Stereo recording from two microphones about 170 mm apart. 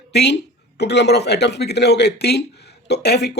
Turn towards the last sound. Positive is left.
turn(degrees=75)  # may be behind; listen again after turning